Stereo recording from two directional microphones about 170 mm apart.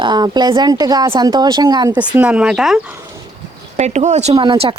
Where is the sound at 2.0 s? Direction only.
10° right (ahead or behind).